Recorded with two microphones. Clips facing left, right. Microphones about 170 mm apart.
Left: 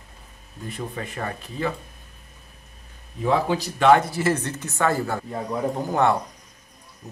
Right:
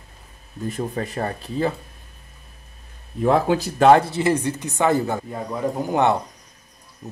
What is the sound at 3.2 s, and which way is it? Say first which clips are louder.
Speech: right 4 dB; 50° right (ahead or behind).